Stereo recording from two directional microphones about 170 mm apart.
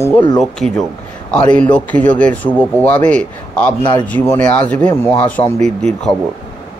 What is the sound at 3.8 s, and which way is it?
Speech, 25° left (ahead or behind).